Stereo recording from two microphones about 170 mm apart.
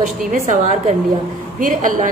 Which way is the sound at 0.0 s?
45° right (ahead or behind).